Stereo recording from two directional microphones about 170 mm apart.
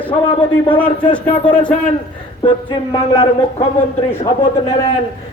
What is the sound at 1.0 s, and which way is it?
Speech, 30° left (ahead or behind).